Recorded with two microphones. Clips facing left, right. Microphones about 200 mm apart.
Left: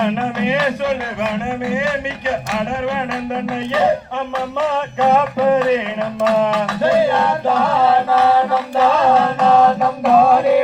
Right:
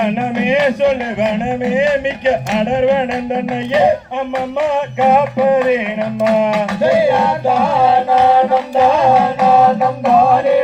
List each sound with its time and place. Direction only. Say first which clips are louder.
0.0 s speech: right 2 dB; 15° right (ahead or behind)
4.6 s music: right 2 dB; 15° right (ahead or behind)